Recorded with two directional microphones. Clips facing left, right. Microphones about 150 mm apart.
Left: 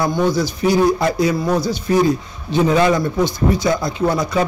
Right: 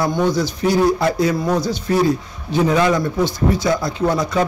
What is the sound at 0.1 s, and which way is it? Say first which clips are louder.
A man's voice: left 1 dB; 10° left (ahead or behind).